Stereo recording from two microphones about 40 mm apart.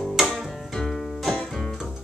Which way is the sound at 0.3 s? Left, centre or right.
Centre.